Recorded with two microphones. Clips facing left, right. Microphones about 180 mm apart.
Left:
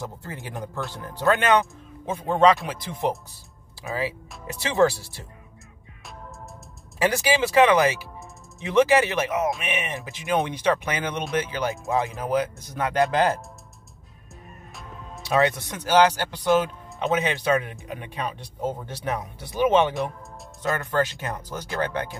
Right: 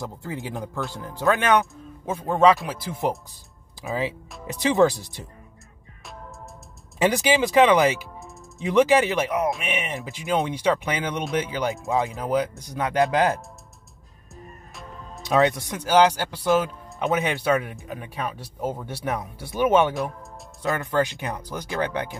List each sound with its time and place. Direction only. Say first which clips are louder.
0.2 s speech: right 3 dB; 10° right (ahead or behind)
4.5 s speech: right 2 dB; 15° right (ahead or behind)
7.0 s speech: right 2 dB; 20° right (ahead or behind)
14.4 s music: right 2 dB; centre (ahead or behind)
15.2 s speech: right 2 dB; 15° right (ahead or behind)
20.7 s speech: right 1 dB; 15° right (ahead or behind)